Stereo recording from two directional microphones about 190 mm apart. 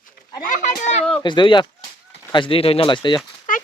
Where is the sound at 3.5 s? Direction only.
45° left (ahead or behind).